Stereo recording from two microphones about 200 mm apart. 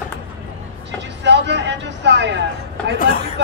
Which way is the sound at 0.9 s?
60° right (ahead or behind).